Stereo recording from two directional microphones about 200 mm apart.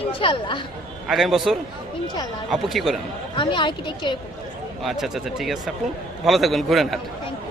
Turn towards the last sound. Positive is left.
turn(degrees=0)  # may be behind; listen again after turning